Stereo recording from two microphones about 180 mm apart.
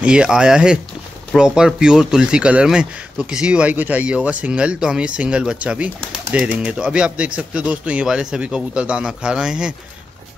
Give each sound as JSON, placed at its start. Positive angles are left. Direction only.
{"t": 0.0, "sound": "speech", "side_deg": -5}